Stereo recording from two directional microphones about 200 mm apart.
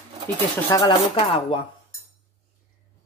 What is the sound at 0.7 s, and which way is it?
Speech, 20° left (ahead or behind).